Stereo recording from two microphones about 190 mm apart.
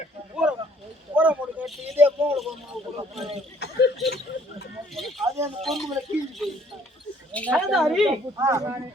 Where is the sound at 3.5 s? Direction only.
60° left (ahead or behind).